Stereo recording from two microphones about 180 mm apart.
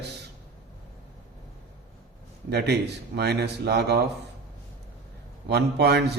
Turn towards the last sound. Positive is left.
turn(degrees=-65)  # may be behind; listen again after turning